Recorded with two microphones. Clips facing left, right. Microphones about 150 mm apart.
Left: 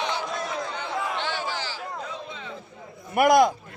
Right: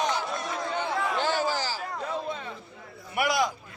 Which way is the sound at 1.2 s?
40° right (ahead or behind).